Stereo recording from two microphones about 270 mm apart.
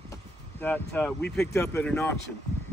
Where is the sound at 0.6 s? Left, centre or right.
Centre.